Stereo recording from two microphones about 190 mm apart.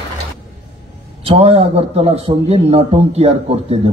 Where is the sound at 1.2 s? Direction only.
30° right (ahead or behind).